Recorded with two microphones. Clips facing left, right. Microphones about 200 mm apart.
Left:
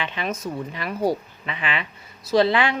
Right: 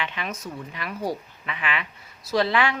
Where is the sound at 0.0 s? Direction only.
30° left (ahead or behind).